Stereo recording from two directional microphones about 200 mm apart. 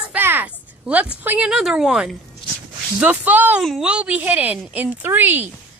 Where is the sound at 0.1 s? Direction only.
10° right (ahead or behind).